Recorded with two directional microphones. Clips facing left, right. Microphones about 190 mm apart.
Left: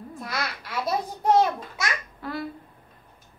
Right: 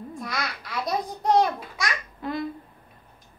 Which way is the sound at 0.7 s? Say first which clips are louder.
Left 1 dB; 5° left (ahead or behind).